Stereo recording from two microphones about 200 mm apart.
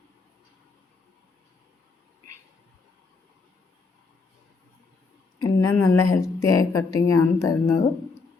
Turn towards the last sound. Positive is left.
turn(degrees=15)  # may be behind; listen again after turning